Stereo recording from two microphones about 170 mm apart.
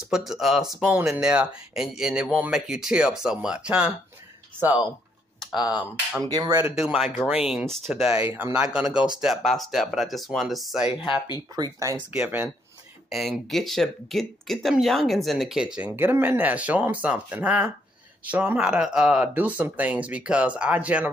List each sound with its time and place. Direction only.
0.0 s speech: centre (ahead or behind)
5.4 s typing: centre (ahead or behind)
6.3 s speech: 25° right (ahead or behind)
6.6 s speech: 5° right (ahead or behind)
8.4 s speech: 15° right (ahead or behind)
11.0 s speech: 30° left (ahead or behind)
11.5 s speech: 20° right (ahead or behind)
12.1 s speech: 10° right (ahead or behind)